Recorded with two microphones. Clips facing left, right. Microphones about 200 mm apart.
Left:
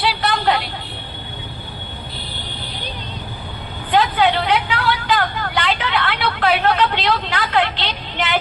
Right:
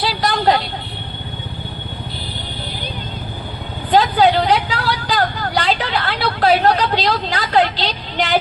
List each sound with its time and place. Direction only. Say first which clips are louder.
0.0 s vehicle: right 2 dB; 40° right (ahead or behind)
3.9 s vehicle: right 3 dB; 40° right (ahead or behind)